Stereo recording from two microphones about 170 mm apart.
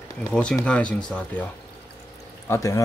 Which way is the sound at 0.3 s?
5° left (ahead or behind).